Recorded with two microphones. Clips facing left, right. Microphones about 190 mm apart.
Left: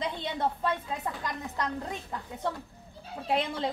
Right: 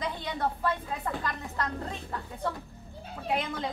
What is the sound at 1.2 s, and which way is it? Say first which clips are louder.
Speech: even; 20° left (ahead or behind).